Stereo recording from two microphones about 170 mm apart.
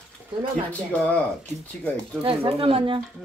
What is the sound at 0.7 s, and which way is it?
Speech, 10° left (ahead or behind).